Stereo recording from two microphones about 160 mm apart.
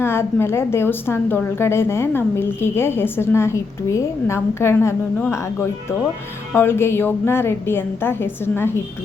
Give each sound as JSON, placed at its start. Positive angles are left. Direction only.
{"t": 0.0, "sound": "a woman's voice", "side_deg": 15}